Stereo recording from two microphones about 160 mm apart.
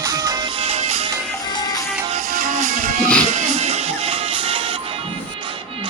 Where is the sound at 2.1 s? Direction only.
55° right (ahead or behind).